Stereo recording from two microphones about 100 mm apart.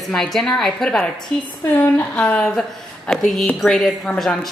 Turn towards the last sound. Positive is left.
turn(degrees=5)  # may be behind; listen again after turning